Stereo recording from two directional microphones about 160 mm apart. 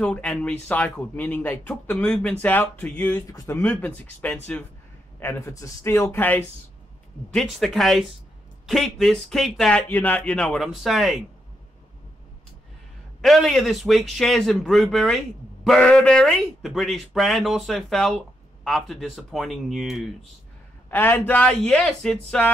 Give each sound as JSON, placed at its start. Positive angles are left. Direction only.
{"t": 0.0, "sound": "speech", "side_deg": 5}
{"t": 3.6, "sound": "speech", "side_deg": 10}
{"t": 7.3, "sound": "speech", "side_deg": 0}
{"t": 13.2, "sound": "speech", "side_deg": 0}
{"t": 20.9, "sound": "speech", "side_deg": 15}